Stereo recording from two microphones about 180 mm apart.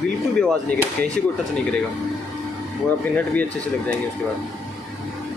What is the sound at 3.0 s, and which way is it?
Speech, 10° left (ahead or behind).